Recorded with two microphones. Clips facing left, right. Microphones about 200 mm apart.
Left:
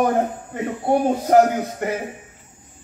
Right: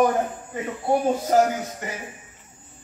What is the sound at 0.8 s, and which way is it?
A man's voice, 60° left (ahead or behind).